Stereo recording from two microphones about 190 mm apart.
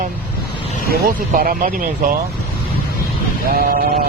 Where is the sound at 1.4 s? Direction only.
45° right (ahead or behind).